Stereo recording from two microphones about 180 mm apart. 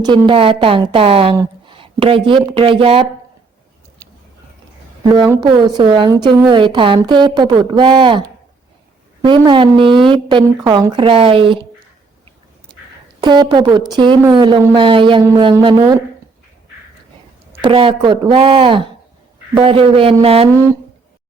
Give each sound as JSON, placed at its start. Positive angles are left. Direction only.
{"t": 0.0, "sound": "a woman's voice", "side_deg": -25}
{"t": 5.1, "sound": "a woman's voice", "side_deg": -20}
{"t": 9.2, "sound": "a woman's voice", "side_deg": -25}
{"t": 13.2, "sound": "a woman's voice", "side_deg": -25}
{"t": 17.6, "sound": "a woman's voice", "side_deg": -30}